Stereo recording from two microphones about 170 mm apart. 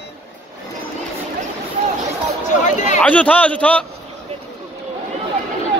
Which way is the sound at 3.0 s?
10° left (ahead or behind).